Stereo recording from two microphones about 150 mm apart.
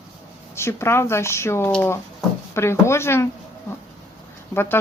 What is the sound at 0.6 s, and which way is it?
Speech, 15° left (ahead or behind).